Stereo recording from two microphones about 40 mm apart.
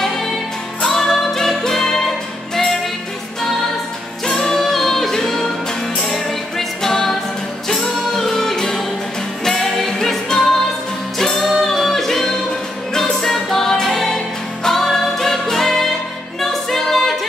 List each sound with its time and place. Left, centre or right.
0.8 s music: centre
4.3 s music: centre
11.4 s a capella: centre
12.9 s music: centre